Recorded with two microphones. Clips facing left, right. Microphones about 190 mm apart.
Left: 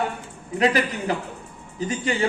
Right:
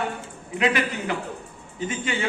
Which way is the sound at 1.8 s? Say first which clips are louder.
Left 3 dB; 35° left (ahead or behind).